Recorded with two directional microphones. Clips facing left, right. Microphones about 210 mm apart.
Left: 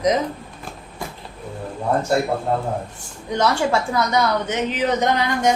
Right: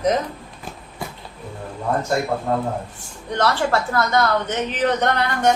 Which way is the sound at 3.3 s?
10° left (ahead or behind).